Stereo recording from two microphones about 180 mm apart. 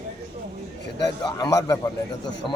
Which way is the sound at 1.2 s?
20° left (ahead or behind).